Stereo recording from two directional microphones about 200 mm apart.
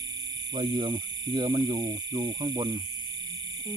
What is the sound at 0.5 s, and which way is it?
Speech, 20° right (ahead or behind).